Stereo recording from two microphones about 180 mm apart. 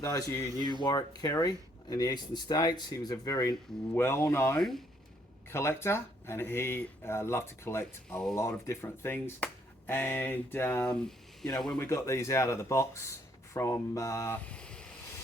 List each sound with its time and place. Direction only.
0.0 s speech: 20° left (ahead or behind)
11.9 s speech: 15° left (ahead or behind)